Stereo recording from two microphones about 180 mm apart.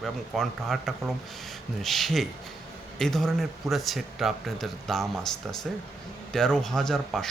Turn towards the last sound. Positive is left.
turn(degrees=0)  # may be behind; listen again after turning